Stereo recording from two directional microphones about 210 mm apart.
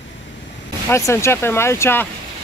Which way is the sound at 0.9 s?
15° left (ahead or behind).